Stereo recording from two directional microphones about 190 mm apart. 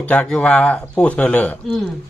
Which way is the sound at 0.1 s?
5° left (ahead or behind).